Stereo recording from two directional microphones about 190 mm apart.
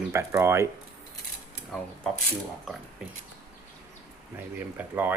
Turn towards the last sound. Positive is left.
turn(degrees=-10)  # may be behind; listen again after turning